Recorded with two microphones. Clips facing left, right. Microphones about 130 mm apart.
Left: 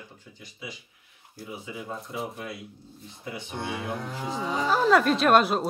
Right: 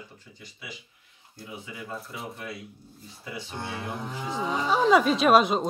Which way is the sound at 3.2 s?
20° left (ahead or behind).